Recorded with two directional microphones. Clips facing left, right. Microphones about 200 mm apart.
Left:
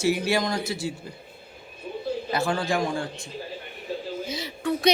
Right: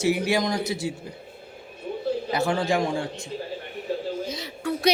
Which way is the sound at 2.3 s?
20° right (ahead or behind).